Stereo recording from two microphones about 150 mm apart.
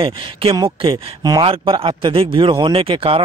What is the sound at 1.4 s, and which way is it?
Speech, 35° right (ahead or behind).